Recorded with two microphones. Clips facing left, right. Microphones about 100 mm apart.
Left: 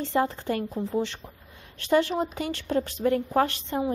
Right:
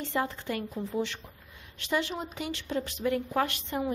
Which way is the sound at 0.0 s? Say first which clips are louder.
Left 6 dB; 35° left (ahead or behind).